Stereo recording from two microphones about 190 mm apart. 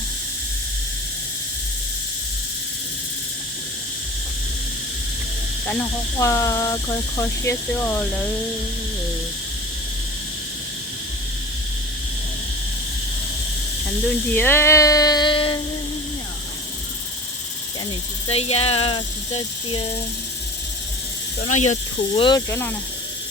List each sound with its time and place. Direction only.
5.6 s speech: 10° left (ahead or behind)
14.3 s speech: 10° left (ahead or behind)
18.3 s speech: 30° left (ahead or behind)
21.4 s speech: 35° left (ahead or behind)
22.3 s speech: 15° left (ahead or behind)